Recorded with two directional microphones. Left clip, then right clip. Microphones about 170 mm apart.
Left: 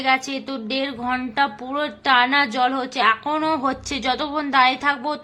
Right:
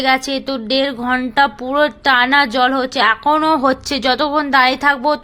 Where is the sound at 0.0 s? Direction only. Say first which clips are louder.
Right 5 dB; 30° right (ahead or behind).